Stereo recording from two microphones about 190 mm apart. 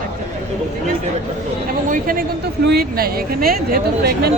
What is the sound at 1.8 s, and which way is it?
Speech, 50° right (ahead or behind).